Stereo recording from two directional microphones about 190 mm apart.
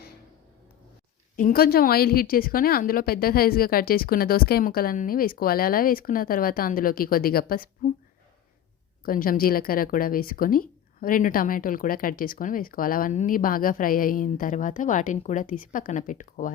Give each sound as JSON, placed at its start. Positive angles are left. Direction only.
{"t": 1.4, "sound": "a woman's voice", "side_deg": 45}
{"t": 9.0, "sound": "a woman's voice", "side_deg": 45}